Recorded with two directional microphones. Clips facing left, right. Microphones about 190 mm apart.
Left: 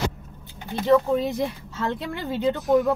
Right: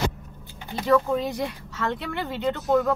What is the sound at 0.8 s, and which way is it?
Speech, 25° left (ahead or behind).